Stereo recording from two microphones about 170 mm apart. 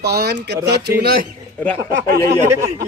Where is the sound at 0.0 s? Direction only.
75° right (ahead or behind).